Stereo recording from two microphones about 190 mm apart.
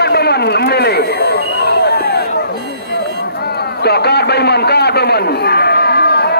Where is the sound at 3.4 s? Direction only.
60° left (ahead or behind).